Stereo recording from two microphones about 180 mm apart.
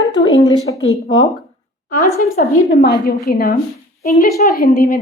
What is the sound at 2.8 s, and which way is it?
A woman's voice, 65° left (ahead or behind).